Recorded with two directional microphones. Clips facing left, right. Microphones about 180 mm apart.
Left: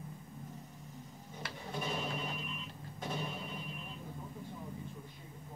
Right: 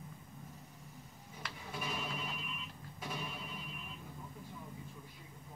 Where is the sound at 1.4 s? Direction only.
25° left (ahead or behind).